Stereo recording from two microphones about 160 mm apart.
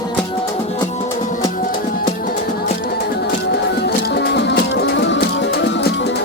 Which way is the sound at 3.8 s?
90° left.